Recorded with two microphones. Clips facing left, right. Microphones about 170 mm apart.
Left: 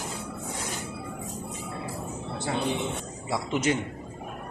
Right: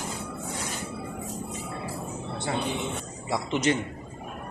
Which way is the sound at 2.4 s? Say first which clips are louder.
Left 1 dB; 5° left (ahead or behind).